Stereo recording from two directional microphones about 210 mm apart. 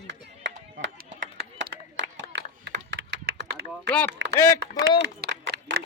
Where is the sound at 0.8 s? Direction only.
55° right (ahead or behind).